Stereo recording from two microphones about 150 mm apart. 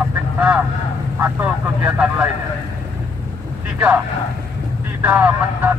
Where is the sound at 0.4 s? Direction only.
10° right (ahead or behind).